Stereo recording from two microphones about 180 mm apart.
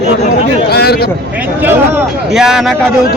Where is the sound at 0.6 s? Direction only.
60° left (ahead or behind).